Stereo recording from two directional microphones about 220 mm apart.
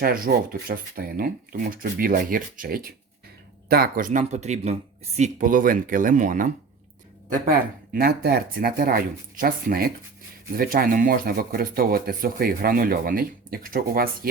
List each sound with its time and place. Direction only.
0.0 s speech: 40° right (ahead or behind)
7.9 s speech: 40° right (ahead or behind)